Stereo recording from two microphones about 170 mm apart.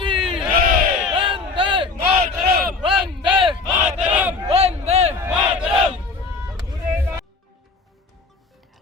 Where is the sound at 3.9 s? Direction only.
10° right (ahead or behind).